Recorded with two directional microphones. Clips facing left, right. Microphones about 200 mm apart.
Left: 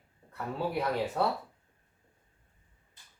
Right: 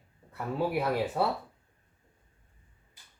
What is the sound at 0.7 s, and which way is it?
Speech, 5° right (ahead or behind).